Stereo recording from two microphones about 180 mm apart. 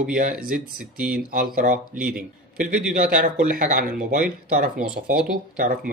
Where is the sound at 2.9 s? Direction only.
50° right (ahead or behind).